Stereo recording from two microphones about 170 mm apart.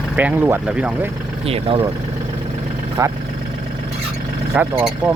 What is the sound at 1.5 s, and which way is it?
Speech, 35° right (ahead or behind).